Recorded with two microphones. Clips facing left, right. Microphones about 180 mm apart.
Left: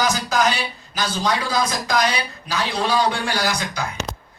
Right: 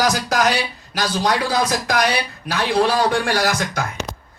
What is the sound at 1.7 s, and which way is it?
Speech, 65° right (ahead or behind).